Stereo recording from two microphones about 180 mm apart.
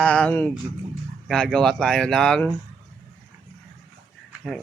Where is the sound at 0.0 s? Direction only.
5° left (ahead or behind).